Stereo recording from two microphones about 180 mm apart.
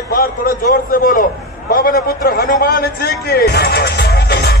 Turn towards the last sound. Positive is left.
turn(degrees=60)  # may be behind; listen again after turning